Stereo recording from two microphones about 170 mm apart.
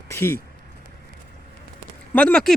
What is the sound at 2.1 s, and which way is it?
Speech, 5° left (ahead or behind).